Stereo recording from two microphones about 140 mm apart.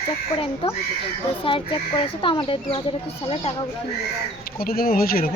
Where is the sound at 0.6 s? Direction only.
40° left (ahead or behind).